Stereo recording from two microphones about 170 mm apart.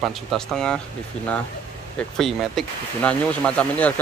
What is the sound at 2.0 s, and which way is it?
Speech, centre (ahead or behind).